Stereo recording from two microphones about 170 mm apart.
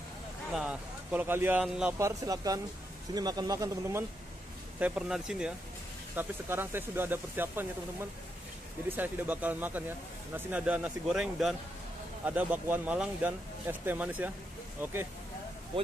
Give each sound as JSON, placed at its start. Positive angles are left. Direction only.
{"t": 0.5, "sound": "speech", "side_deg": -5}
{"t": 2.0, "sound": "a man's voice", "side_deg": -20}
{"t": 4.7, "sound": "speech", "side_deg": -5}
{"t": 8.8, "sound": "speech", "side_deg": -10}